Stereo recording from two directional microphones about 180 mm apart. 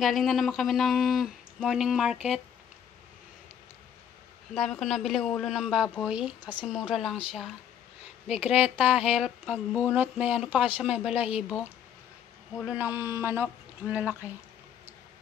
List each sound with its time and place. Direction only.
0.0 s speech: centre (ahead or behind)
4.6 s speech: 5° left (ahead or behind)
8.4 s speech: 10° right (ahead or behind)